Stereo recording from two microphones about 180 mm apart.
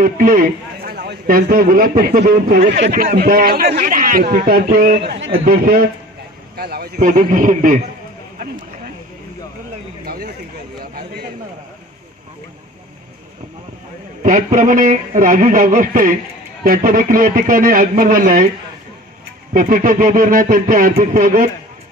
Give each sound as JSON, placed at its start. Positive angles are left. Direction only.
{"t": 0.0, "sound": "a man's voice", "side_deg": -50}
{"t": 5.4, "sound": "a man's voice", "side_deg": -55}
{"t": 10.0, "sound": "a sound", "side_deg": -55}
{"t": 14.2, "sound": "a man's voice", "side_deg": -50}
{"t": 19.5, "sound": "a man's voice", "side_deg": -50}